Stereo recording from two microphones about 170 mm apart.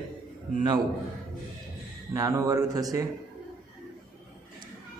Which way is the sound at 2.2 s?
20° right (ahead or behind).